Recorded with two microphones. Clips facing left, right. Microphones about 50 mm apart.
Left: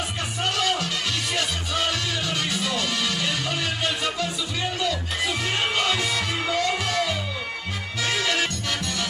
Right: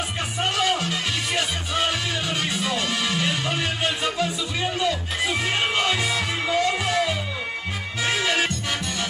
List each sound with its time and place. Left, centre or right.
0.4 s music: right